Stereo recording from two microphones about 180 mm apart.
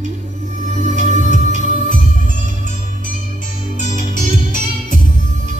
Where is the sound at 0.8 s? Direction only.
40° right (ahead or behind).